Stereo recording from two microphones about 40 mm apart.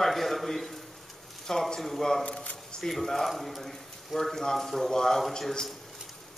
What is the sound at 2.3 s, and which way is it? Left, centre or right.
Speech, left.